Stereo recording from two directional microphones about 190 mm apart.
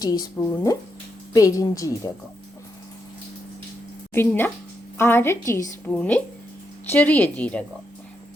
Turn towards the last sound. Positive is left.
turn(degrees=5)  # may be behind; listen again after turning